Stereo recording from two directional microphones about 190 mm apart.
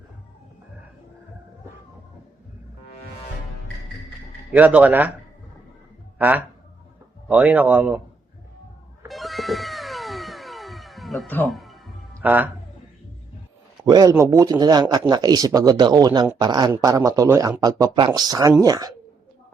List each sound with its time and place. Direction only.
4.5 s a man's voice: 10° right (ahead or behind)
6.1 s a man's voice: 10° right (ahead or behind)
9.0 s cat: centre (ahead or behind)
12.1 s music: 10° right (ahead or behind)
13.8 s speech: 20° right (ahead or behind)